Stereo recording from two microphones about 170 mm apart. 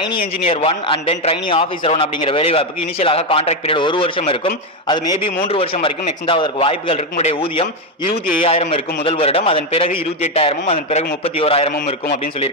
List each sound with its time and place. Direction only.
0.0 s a man's voice: 30° left (ahead or behind)